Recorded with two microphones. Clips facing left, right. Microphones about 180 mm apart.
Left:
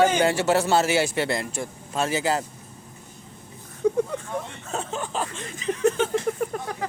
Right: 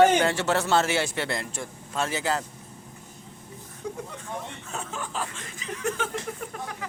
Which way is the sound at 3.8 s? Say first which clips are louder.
Left 13 dB; 55° left (ahead or behind).